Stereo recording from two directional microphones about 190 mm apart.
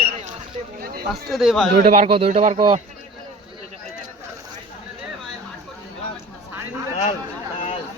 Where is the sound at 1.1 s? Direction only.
Centre (ahead or behind).